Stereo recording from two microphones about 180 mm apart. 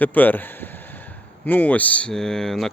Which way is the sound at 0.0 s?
10° left (ahead or behind).